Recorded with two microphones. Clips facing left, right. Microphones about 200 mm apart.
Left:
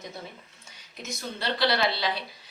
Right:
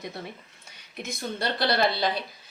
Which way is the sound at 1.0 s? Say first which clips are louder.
Right 4 dB; 50° right (ahead or behind).